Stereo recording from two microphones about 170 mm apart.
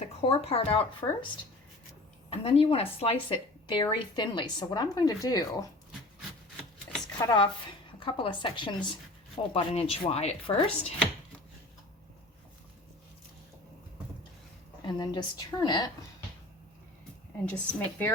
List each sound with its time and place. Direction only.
0.2 s speech: 35° left (ahead or behind)
2.3 s speech: 35° left (ahead or behind)
7.2 s speech: 25° left (ahead or behind)
14.8 s speech: 25° left (ahead or behind)
17.4 s a woman's voice: 5° left (ahead or behind)